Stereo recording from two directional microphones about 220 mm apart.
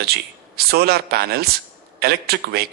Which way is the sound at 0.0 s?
45° right (ahead or behind).